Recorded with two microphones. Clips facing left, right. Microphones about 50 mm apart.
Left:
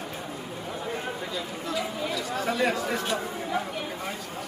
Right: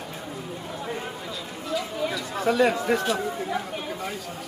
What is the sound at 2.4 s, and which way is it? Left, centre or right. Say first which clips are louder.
Speech: right 5 dB; right.